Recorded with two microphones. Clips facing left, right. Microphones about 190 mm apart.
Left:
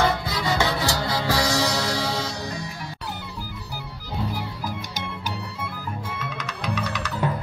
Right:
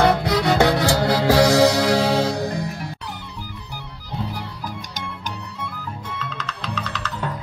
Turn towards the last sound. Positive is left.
turn(degrees=10)  # may be behind; listen again after turning